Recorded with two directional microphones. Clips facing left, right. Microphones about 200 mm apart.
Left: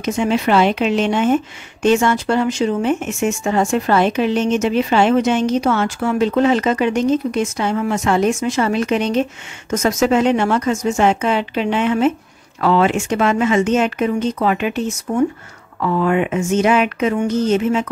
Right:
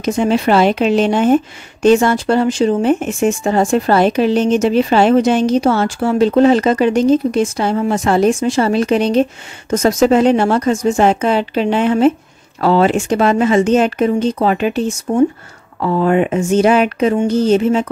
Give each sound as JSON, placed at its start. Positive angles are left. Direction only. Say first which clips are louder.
{"t": 0.0, "sound": "a woman's voice", "louder": "right 3 dB", "side_deg": -35}